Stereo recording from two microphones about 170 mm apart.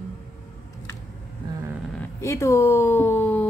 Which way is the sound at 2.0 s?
15° left (ahead or behind).